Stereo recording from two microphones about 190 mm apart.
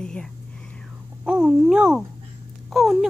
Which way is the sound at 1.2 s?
5° right (ahead or behind).